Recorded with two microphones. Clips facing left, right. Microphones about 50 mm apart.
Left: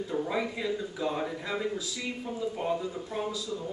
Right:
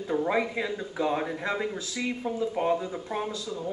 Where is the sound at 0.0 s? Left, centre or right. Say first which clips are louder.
Right 4 dB; right.